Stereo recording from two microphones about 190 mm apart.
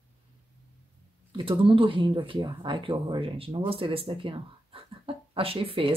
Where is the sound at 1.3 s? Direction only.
25° right (ahead or behind).